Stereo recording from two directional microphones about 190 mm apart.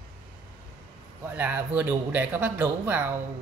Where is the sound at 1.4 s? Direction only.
10° right (ahead or behind).